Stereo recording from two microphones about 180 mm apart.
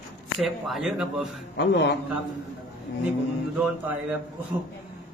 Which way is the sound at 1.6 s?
75° left (ahead or behind).